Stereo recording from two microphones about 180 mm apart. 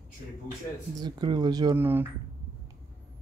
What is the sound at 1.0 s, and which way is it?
Speech, 25° right (ahead or behind).